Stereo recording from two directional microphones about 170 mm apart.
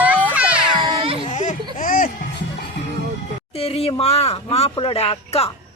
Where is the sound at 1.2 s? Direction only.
45° left (ahead or behind).